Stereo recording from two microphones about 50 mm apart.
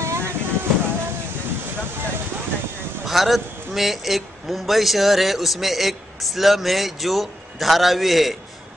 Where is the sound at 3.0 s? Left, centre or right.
Centre.